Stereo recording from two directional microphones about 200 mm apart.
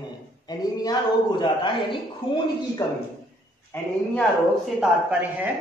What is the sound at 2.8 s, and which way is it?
Speech, 15° left (ahead or behind).